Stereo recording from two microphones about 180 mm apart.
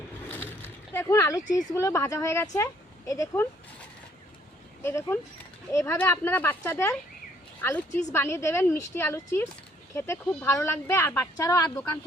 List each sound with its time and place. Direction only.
0.9 s speech: 15° left (ahead or behind)
4.8 s speech: 15° left (ahead or behind)
8.1 s speech: 15° left (ahead or behind)